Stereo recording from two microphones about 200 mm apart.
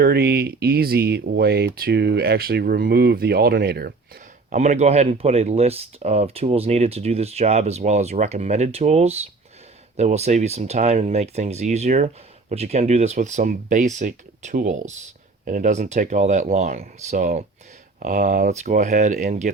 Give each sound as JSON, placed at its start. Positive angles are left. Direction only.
{"t": 0.0, "sound": "speech", "side_deg": -50}
{"t": 4.4, "sound": "speech", "side_deg": -35}